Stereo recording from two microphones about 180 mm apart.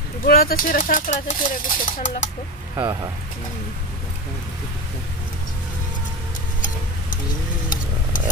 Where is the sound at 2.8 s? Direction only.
20° right (ahead or behind).